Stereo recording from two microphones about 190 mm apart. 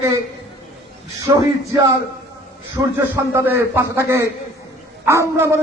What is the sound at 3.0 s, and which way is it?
A man's voice, 15° right (ahead or behind).